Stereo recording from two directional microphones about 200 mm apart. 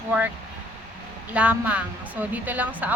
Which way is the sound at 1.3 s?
5° right (ahead or behind).